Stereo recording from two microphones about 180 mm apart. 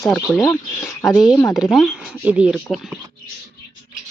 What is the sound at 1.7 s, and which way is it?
Speech, 5° right (ahead or behind).